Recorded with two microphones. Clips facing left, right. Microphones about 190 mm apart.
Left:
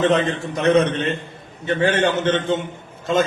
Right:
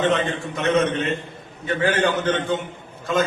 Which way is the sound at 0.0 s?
40° left (ahead or behind).